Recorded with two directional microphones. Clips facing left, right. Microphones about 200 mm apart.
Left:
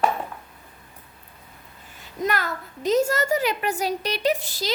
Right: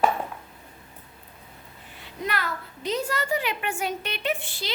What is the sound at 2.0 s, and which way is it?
A woman's voice, 45° left (ahead or behind).